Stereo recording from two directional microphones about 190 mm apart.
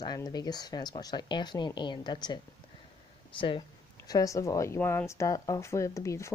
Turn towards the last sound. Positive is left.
turn(degrees=15)  # may be behind; listen again after turning